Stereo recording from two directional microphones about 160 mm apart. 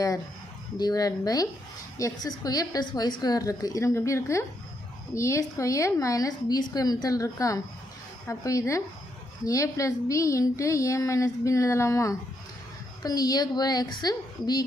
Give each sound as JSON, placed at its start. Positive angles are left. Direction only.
{"t": 0.8, "sound": "speech", "side_deg": 25}